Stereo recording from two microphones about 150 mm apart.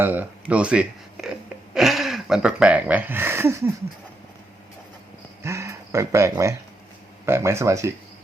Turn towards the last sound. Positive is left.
turn(degrees=-20)  # may be behind; listen again after turning